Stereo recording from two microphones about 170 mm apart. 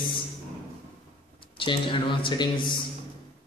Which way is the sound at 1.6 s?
30° left (ahead or behind).